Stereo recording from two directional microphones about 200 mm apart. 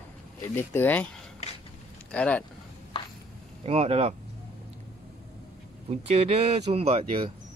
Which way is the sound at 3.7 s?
30° right (ahead or behind).